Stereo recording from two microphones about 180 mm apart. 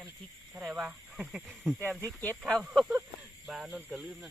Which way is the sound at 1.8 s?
10° left (ahead or behind).